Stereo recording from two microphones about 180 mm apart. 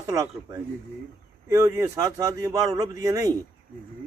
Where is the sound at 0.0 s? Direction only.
20° right (ahead or behind).